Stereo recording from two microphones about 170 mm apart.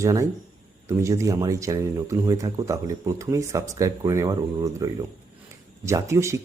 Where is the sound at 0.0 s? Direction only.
20° right (ahead or behind).